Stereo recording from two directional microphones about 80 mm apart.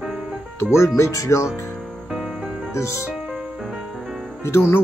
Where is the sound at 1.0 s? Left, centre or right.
Left.